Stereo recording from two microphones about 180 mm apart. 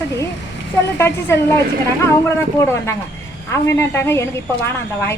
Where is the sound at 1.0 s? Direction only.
15° left (ahead or behind).